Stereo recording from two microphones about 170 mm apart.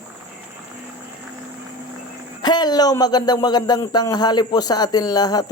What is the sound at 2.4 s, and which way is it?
A man's voice, 25° left (ahead or behind).